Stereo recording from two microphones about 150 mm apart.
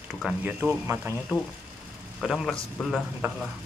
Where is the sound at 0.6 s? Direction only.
20° right (ahead or behind).